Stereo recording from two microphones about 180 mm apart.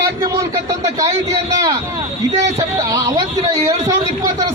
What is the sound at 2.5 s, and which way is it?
Speech, 20° right (ahead or behind).